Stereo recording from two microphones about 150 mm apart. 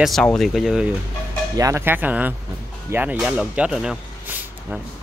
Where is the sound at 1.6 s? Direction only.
20° right (ahead or behind).